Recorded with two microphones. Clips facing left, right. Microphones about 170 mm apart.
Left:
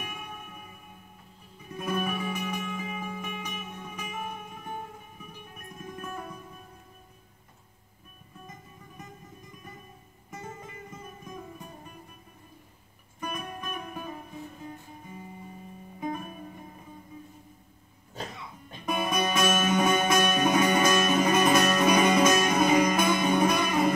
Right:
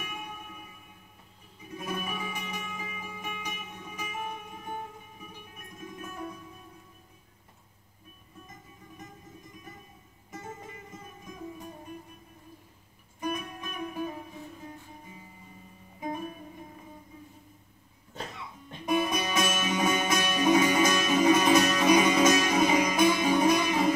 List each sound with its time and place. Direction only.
1.8 s music: 55° left (ahead or behind)
13.3 s music: 55° left (ahead or behind)
18.9 s music: 55° left (ahead or behind)